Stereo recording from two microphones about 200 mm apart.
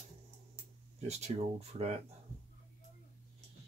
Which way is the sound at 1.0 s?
35° right (ahead or behind).